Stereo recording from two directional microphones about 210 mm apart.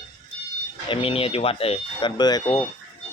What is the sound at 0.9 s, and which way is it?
Speech, 25° left (ahead or behind).